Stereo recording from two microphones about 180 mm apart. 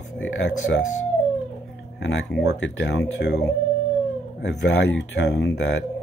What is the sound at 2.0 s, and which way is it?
Speech, 90° left.